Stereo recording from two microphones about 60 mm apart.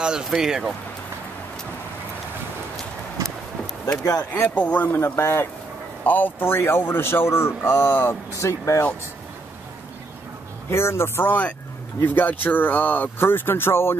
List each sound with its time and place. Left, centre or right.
0.0 s speech: centre
4.2 s speech: left
5.0 s a man's voice: left
6.0 s speech: left
7.8 s speech: left
8.4 s speech: left
10.7 s a man's voice: left
11.2 s speech: left